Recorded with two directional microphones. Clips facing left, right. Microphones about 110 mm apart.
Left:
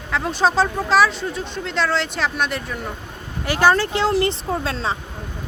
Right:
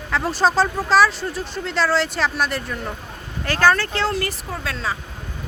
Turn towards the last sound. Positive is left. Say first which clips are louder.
# left 4 dB
turn(degrees=30)  # may be behind; listen again after turning